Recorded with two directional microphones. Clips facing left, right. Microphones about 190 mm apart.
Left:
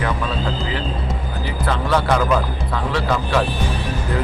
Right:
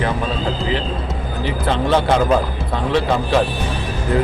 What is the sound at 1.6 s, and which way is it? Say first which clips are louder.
Speech: right 2 dB; 25° right (ahead or behind).